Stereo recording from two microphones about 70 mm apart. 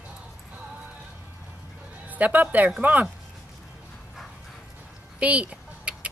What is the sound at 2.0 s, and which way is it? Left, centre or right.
Speech, right.